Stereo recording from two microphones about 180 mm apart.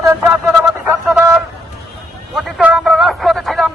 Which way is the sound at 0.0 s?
15° right (ahead or behind).